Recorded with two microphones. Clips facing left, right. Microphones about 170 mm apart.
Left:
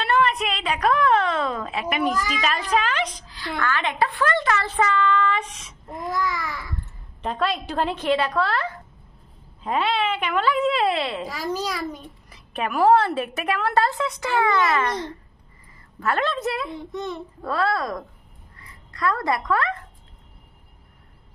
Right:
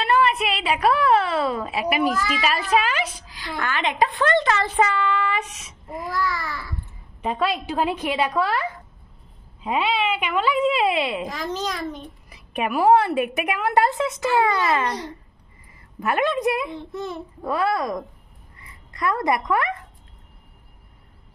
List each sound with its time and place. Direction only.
0.0 s a sound: 5° right (ahead or behind)
2.4 s a woman's voice: 5° right (ahead or behind)
4.6 s child singing: 15° right (ahead or behind)
6.1 s speech: 20° left (ahead or behind)
7.2 s speech: 5° right (ahead or behind)
11.2 s a child's voice: 10° left (ahead or behind)
12.3 s a woman's voice: 10° right (ahead or behind)
16.9 s a child's voice: 5° right (ahead or behind)
17.4 s speech: 15° right (ahead or behind)